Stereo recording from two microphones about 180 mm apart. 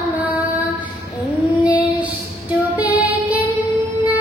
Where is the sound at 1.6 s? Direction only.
10° right (ahead or behind).